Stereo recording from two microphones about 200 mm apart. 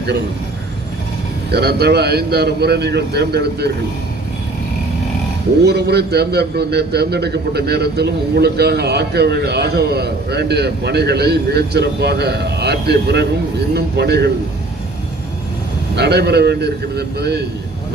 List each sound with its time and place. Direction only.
1.5 s a man's voice: 55° right (ahead or behind)
5.6 s a man's voice: 55° right (ahead or behind)
16.0 s a man's voice: 55° right (ahead or behind)